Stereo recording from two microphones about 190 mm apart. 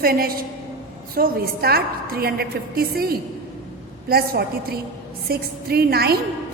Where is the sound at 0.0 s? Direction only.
50° right (ahead or behind).